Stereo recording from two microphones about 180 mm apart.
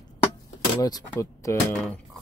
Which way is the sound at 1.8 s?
Centre (ahead or behind).